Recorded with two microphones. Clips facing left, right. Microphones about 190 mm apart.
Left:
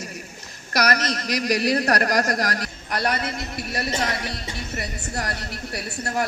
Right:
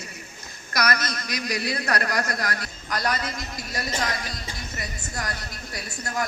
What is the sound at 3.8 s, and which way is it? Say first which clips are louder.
A woman's voice: left 3 dB; 30° left (ahead or behind).